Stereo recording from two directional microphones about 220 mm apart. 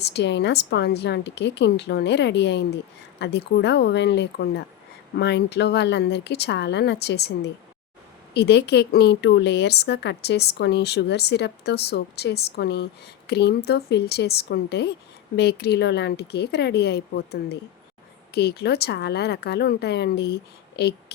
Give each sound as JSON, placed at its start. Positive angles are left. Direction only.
{"t": 0.0, "sound": "a woman's voice", "side_deg": 50}